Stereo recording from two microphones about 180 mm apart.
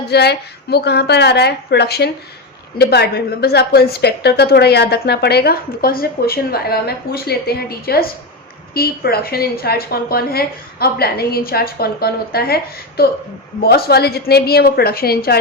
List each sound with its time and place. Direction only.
0.1 s a woman's voice: 65° left (ahead or behind)